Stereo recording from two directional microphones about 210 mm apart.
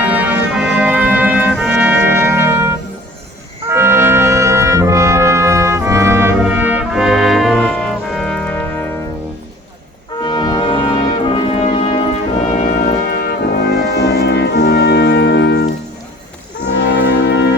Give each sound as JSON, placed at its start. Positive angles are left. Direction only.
{"t": 0.0, "sound": "music", "side_deg": -5}
{"t": 3.7, "sound": "brass instrument", "side_deg": -10}
{"t": 10.2, "sound": "brass instrument", "side_deg": 20}
{"t": 13.1, "sound": "brass instrument", "side_deg": 45}
{"t": 16.6, "sound": "music", "side_deg": 60}